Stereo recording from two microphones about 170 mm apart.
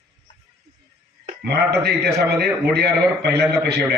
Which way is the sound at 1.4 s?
75° right (ahead or behind).